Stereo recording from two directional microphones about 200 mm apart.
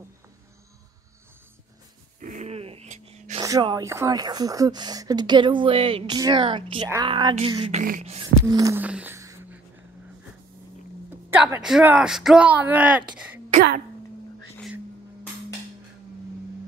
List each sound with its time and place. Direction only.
2.1 s a sound: 40° right (ahead or behind)
3.3 s speech: 20° right (ahead or behind)
8.0 s beatboxing: 30° right (ahead or behind)
8.5 s a sound: 15° right (ahead or behind)
11.1 s speech: 10° right (ahead or behind)
13.6 s speech: 55° right (ahead or behind)